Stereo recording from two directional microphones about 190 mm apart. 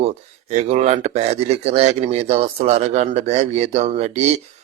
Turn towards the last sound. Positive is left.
turn(degrees=-35)  # may be behind; listen again after turning